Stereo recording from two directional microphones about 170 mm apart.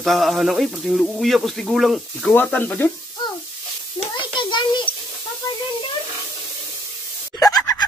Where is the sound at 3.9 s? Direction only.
30° left (ahead or behind).